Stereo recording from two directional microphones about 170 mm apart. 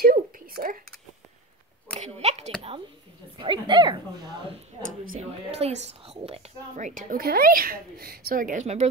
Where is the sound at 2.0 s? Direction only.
40° right (ahead or behind).